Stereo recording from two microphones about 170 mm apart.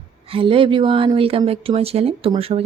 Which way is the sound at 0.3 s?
30° right (ahead or behind).